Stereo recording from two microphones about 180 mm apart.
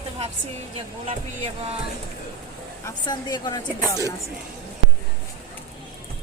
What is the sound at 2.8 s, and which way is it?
A woman's voice, 20° left (ahead or behind).